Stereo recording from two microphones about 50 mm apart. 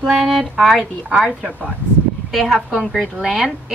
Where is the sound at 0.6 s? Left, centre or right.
Centre.